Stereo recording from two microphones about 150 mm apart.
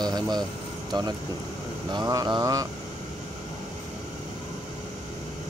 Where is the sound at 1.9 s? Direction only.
25° right (ahead or behind).